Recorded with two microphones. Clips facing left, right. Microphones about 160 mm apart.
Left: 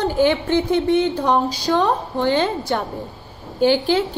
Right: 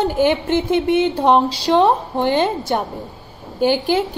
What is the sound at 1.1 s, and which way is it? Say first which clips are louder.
A woman's voice: right 4 dB; 25° right (ahead or behind).